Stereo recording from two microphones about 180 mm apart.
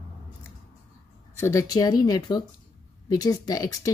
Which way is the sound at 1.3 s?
15° left (ahead or behind).